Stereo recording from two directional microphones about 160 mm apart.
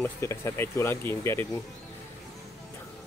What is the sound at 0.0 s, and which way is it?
Speech, 15° left (ahead or behind).